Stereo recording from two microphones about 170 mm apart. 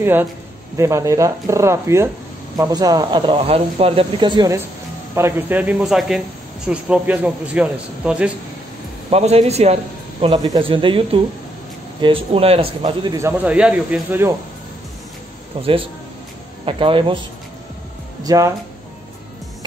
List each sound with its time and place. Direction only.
0.0 s speech: 10° right (ahead or behind)
5.1 s speech: 10° right (ahead or behind)
9.1 s speech: 35° right (ahead or behind)
10.2 s speech: 25° right (ahead or behind)
13.2 s speech: 10° right (ahead or behind)
15.6 s speech: 30° right (ahead or behind)
18.2 s speech: 20° right (ahead or behind)